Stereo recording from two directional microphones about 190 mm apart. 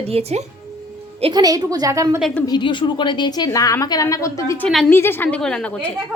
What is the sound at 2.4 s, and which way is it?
A woman's voice, 25° left (ahead or behind).